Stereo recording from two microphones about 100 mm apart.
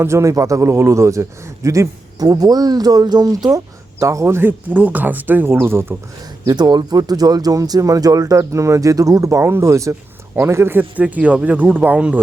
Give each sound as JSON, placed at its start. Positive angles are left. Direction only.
{"t": 0.0, "sound": "a man's voice", "side_deg": -30}
{"t": 6.4, "sound": "a man's voice", "side_deg": -45}